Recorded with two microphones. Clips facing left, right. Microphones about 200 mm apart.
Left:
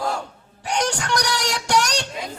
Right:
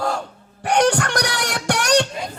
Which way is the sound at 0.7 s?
55° right (ahead or behind).